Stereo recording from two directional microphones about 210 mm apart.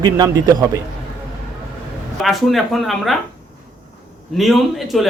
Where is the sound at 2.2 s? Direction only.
Centre (ahead or behind).